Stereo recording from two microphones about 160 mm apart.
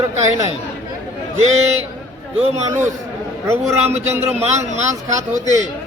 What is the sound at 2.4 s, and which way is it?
Speech, 40° right (ahead or behind).